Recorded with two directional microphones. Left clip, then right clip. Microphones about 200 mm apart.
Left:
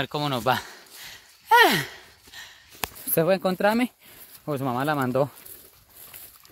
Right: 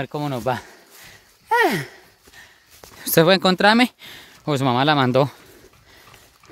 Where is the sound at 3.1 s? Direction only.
35° right (ahead or behind).